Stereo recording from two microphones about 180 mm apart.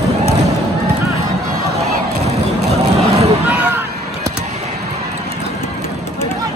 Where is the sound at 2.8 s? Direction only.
35° right (ahead or behind).